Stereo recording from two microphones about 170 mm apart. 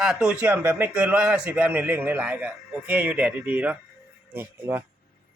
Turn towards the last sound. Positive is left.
turn(degrees=-10)  # may be behind; listen again after turning